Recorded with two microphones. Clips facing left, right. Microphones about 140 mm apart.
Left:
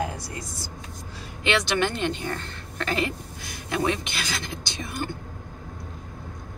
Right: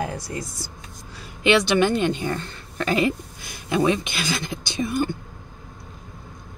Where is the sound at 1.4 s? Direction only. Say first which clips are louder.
Right 6 dB; 10° right (ahead or behind).